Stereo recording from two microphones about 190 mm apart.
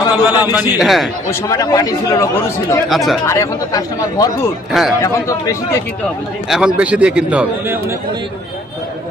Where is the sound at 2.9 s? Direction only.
Centre (ahead or behind).